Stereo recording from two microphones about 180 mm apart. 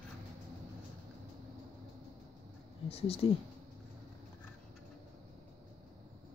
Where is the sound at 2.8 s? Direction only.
35° left (ahead or behind).